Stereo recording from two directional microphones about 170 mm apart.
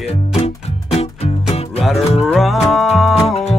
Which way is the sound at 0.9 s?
35° left (ahead or behind).